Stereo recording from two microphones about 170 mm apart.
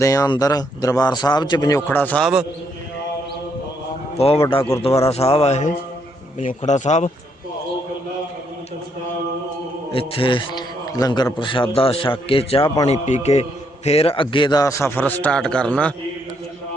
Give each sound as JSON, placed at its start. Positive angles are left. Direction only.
{"t": 0.0, "sound": "a man's voice", "side_deg": 20}
{"t": 4.8, "sound": "a man's voice", "side_deg": 35}
{"t": 9.9, "sound": "a man's voice", "side_deg": 30}